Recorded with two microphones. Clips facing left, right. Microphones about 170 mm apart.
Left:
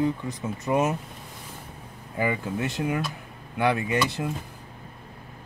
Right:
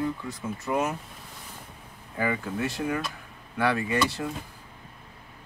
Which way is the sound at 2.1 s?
20° left (ahead or behind).